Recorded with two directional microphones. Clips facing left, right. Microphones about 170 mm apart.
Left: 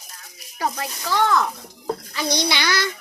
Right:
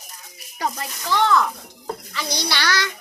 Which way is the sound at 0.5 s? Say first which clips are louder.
Left 1 dB; 5° left (ahead or behind).